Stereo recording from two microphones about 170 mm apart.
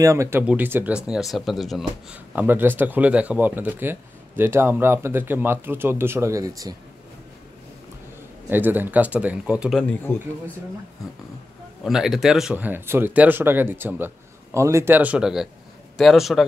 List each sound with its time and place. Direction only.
0.0 s speech: 15° right (ahead or behind)
8.5 s speech: 10° right (ahead or behind)
10.1 s speech: 10° left (ahead or behind)
11.8 s a man's voice: centre (ahead or behind)